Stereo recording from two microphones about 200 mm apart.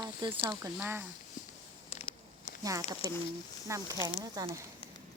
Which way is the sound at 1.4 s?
40° left (ahead or behind).